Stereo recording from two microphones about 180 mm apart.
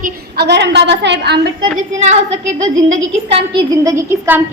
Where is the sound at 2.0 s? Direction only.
40° right (ahead or behind).